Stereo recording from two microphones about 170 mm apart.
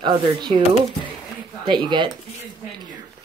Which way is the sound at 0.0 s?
25° right (ahead or behind).